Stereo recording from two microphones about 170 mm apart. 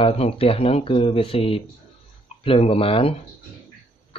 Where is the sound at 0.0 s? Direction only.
35° left (ahead or behind).